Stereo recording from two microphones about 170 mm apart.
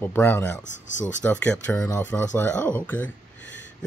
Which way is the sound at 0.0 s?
10° left (ahead or behind).